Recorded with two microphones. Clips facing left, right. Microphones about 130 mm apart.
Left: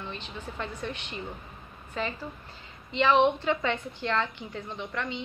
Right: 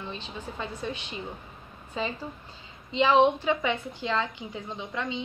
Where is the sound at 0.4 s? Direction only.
10° right (ahead or behind).